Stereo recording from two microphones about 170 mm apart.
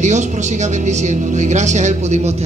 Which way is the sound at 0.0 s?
45° right (ahead or behind).